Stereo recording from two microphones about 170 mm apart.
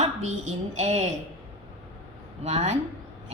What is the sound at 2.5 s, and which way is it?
Speech, 40° right (ahead or behind).